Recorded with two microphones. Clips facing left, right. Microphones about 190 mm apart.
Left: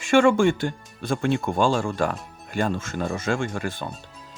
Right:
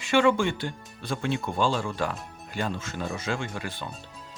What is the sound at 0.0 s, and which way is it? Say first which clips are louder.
Speech: left 5 dB; 50° left (ahead or behind).